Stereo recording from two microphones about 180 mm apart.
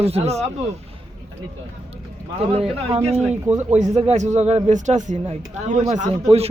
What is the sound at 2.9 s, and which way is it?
Speech, 35° right (ahead or behind).